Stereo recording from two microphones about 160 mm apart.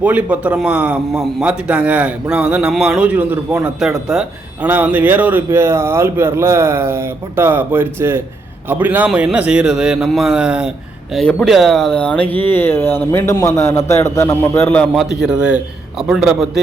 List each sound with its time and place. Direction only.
0.0 s a man's voice: 10° right (ahead or behind)
11.1 s speech: 5° left (ahead or behind)
15.3 s a man's voice: 5° right (ahead or behind)